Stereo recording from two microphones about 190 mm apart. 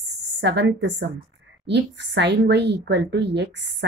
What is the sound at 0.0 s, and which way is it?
A woman's voice, 65° right (ahead or behind).